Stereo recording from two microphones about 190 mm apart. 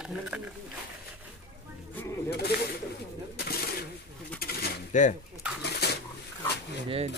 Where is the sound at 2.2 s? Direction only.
55° left (ahead or behind).